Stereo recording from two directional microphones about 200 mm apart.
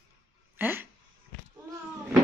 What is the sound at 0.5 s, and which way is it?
Speech, 10° right (ahead or behind).